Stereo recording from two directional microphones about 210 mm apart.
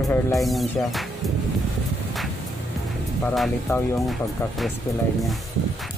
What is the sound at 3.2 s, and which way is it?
Speech, centre (ahead or behind).